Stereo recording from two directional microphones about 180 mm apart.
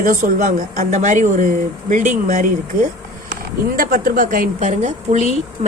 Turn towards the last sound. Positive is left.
turn(degrees=-40)  # may be behind; listen again after turning